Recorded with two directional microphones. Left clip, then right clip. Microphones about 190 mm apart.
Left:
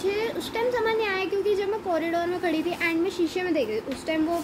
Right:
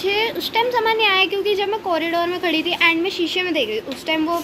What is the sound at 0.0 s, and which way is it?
Speech, centre (ahead or behind).